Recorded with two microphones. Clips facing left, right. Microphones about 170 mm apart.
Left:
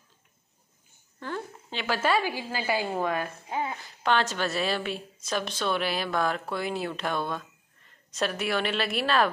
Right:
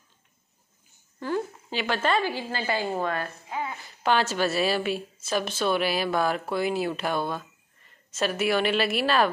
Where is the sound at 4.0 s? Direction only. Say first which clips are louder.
Right 2 dB; 5° right (ahead or behind).